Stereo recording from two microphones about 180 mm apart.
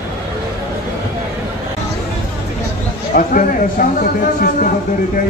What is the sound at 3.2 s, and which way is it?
Speech, 50° left (ahead or behind).